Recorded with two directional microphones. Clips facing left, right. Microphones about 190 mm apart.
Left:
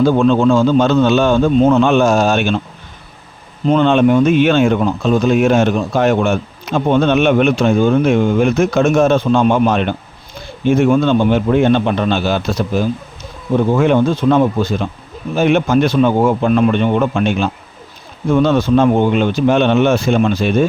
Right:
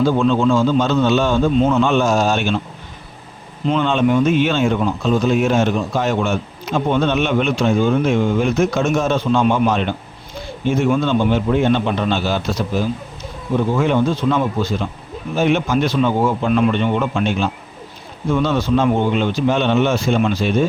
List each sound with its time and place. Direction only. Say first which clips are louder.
0.0 s speech: left 4 dB; 55° left (ahead or behind)
3.7 s a man's voice: left 5 dB; 55° left (ahead or behind)